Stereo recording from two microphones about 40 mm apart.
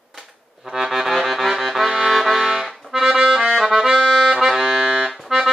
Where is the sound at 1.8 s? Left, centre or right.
Centre.